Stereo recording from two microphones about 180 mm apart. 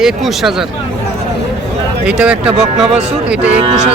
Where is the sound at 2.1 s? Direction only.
5° right (ahead or behind).